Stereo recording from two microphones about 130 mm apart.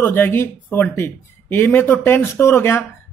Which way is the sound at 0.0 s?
15° left (ahead or behind).